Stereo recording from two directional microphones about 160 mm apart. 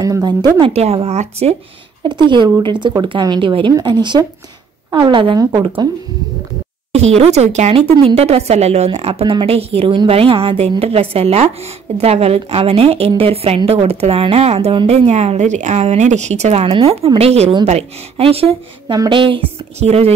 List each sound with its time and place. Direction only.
0.0 s a woman's voice: 25° right (ahead or behind); by 1.5 s 45° right (ahead or behind)
2.0 s speech: 30° right (ahead or behind)
7.2 s a woman's voice: 45° right (ahead or behind)